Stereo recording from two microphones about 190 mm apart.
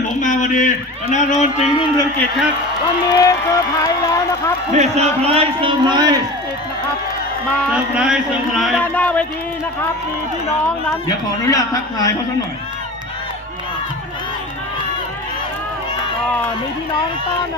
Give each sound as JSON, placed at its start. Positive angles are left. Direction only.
{"t": 0.2, "sound": "a sound", "side_deg": 40}
{"t": 1.1, "sound": "speech", "side_deg": 40}
{"t": 3.1, "sound": "speech", "side_deg": 20}
{"t": 4.8, "sound": "a man's voice", "side_deg": -35}
{"t": 7.7, "sound": "speech", "side_deg": -5}
{"t": 11.4, "sound": "speech", "side_deg": 20}